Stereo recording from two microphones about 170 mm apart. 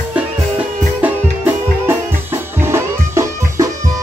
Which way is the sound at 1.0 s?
10° right (ahead or behind).